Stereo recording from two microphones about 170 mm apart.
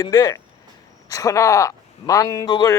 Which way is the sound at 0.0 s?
25° left (ahead or behind).